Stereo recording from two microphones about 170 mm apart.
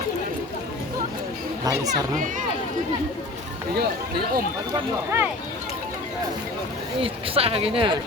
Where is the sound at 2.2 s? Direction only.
50° right (ahead or behind).